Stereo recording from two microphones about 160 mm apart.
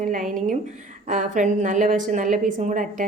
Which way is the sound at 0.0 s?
55° right (ahead or behind).